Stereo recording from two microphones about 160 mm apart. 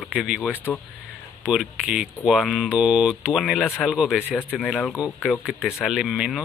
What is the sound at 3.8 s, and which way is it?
Speech, 5° right (ahead or behind).